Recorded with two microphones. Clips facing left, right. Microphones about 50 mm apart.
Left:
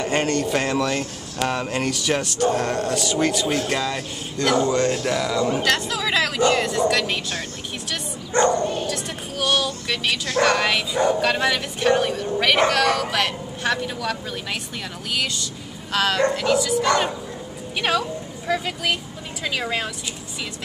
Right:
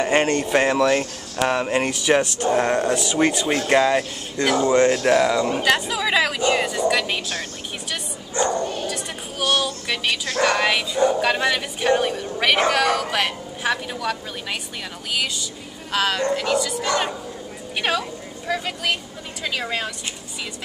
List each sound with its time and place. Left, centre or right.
0.0 s speech: right
5.5 s speech: centre
8.4 s bow-wow: left
8.8 s bow-wow: centre
10.4 s speech: centre
17.7 s speech: centre